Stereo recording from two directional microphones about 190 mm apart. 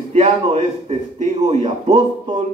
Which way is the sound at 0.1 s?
30° right (ahead or behind).